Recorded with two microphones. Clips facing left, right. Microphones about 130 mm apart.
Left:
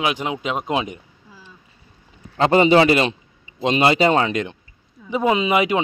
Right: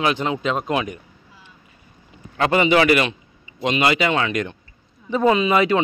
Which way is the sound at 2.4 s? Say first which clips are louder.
Left 3 dB; 30° left (ahead or behind).